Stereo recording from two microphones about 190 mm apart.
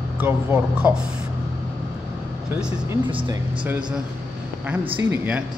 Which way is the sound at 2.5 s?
10° right (ahead or behind).